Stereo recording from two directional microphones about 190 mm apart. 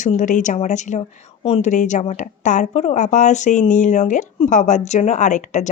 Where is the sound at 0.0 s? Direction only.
40° left (ahead or behind).